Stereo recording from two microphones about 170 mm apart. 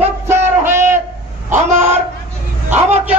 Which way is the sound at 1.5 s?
45° right (ahead or behind).